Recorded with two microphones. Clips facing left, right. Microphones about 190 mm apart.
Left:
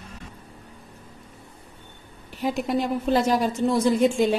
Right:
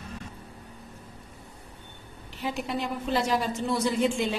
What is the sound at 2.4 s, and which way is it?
A woman's voice, 45° left (ahead or behind).